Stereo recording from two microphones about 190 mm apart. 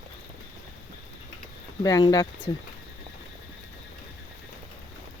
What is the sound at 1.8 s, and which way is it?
Speech, 20° left (ahead or behind).